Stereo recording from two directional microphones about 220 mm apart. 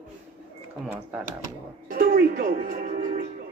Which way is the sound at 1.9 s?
40° right (ahead or behind).